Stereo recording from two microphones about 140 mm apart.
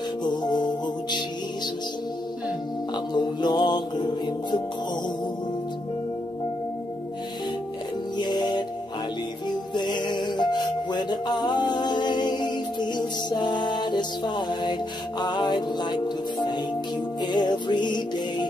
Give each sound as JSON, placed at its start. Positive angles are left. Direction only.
{"t": 0.2, "sound": "music", "side_deg": 30}
{"t": 3.1, "sound": "music", "side_deg": 30}
{"t": 8.2, "sound": "music", "side_deg": 30}